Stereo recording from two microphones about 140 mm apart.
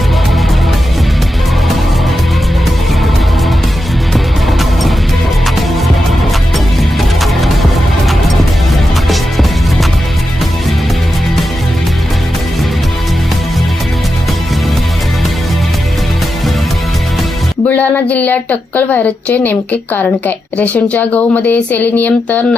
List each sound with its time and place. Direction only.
4.1 s music: centre (ahead or behind)
17.7 s a woman's voice: 10° left (ahead or behind)